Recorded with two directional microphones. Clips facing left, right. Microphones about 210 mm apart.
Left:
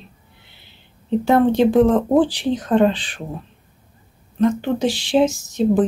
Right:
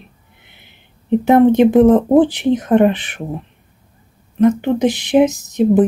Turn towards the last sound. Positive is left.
turn(degrees=-20)  # may be behind; listen again after turning